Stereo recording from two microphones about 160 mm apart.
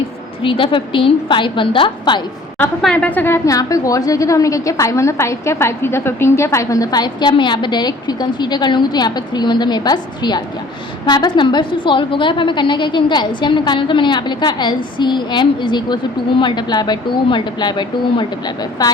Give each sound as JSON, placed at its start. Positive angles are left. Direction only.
{"t": 0.4, "sound": "a woman's voice", "side_deg": 30}
{"t": 2.8, "sound": "a woman's voice", "side_deg": 10}